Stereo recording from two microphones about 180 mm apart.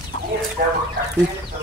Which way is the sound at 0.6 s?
55° right (ahead or behind).